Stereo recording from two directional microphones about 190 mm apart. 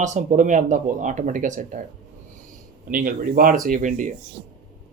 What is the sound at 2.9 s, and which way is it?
A man's voice, 50° right (ahead or behind).